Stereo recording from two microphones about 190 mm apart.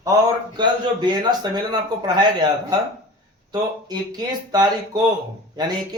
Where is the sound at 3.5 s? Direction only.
20° right (ahead or behind).